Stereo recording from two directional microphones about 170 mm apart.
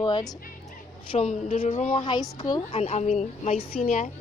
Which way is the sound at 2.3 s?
25° left (ahead or behind).